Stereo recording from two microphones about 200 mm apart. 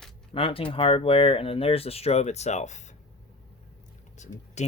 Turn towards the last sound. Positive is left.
turn(degrees=35)  # may be behind; listen again after turning